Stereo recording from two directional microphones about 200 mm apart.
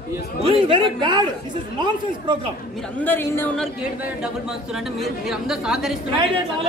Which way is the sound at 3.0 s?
10° left (ahead or behind).